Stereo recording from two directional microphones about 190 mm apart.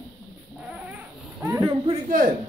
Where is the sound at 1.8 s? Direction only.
45° right (ahead or behind).